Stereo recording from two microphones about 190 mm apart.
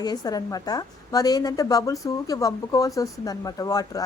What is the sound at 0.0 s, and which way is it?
A woman's voice, 20° left (ahead or behind).